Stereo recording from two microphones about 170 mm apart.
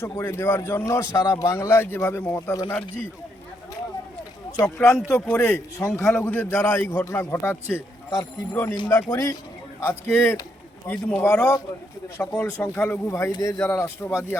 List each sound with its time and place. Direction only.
0.0 s a man's voice: 15° left (ahead or behind)
4.6 s a man's voice: 5° left (ahead or behind)
5.9 s a man's voice: centre (ahead or behind)